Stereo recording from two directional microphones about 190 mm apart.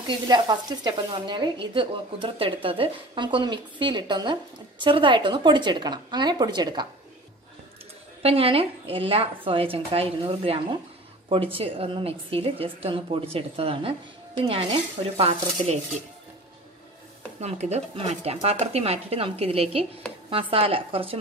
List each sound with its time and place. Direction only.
0.0 s speech: 20° right (ahead or behind)
8.2 s speech: 30° right (ahead or behind)
17.4 s speech: 35° right (ahead or behind)